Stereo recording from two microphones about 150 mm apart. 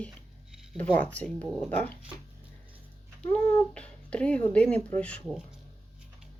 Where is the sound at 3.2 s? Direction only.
10° left (ahead or behind).